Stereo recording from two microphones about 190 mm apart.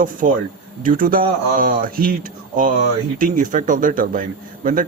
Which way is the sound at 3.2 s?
45° right (ahead or behind).